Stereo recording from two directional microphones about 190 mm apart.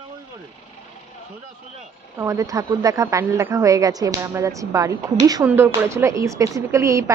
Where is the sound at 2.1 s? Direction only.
15° right (ahead or behind).